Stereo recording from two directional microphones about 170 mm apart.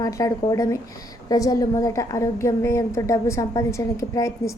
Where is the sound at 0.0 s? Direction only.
20° left (ahead or behind).